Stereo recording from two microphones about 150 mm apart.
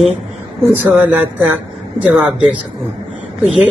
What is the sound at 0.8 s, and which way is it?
Speech, 15° right (ahead or behind).